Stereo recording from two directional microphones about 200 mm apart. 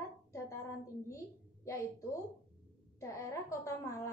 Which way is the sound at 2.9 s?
15° left (ahead or behind).